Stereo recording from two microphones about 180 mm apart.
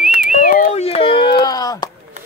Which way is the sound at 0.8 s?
35° left (ahead or behind).